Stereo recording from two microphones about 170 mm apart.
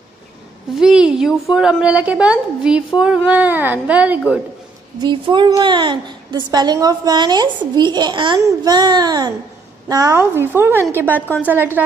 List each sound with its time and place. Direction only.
0.7 s a woman's voice: 5° right (ahead or behind)
5.0 s a woman's voice: 30° right (ahead or behind); by 11.8 s 10° right (ahead or behind)